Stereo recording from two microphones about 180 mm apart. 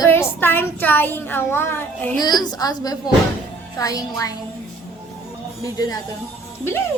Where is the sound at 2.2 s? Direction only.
25° left (ahead or behind).